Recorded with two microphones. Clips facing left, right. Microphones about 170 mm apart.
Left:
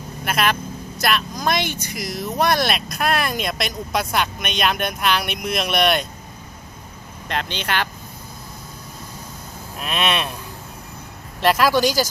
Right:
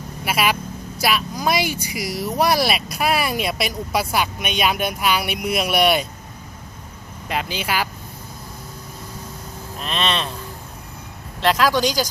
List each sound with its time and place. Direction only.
0.3 s speech: 5° right (ahead or behind)
7.3 s speech: 5° right (ahead or behind)
9.7 s speech: 10° left (ahead or behind)
11.3 s speech: 10° left (ahead or behind)